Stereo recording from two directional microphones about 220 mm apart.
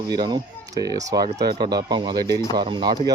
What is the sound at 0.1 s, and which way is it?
Speech, 20° right (ahead or behind).